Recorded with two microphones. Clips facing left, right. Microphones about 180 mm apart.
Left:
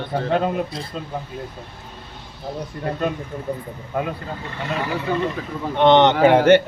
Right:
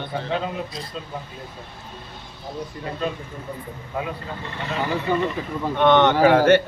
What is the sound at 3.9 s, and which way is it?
Speech, 60° left (ahead or behind).